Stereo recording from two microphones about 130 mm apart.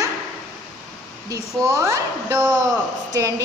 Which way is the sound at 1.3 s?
25° right (ahead or behind).